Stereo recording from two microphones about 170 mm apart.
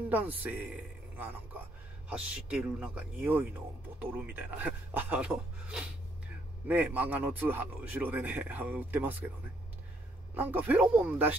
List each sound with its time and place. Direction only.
0.1 s a man's voice: 10° right (ahead or behind)
10.3 s speech: 10° right (ahead or behind)